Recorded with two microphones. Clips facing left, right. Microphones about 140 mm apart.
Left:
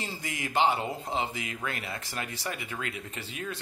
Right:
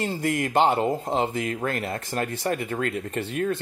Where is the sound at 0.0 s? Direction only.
55° right (ahead or behind).